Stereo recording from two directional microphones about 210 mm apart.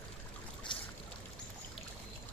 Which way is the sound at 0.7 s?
20° left (ahead or behind).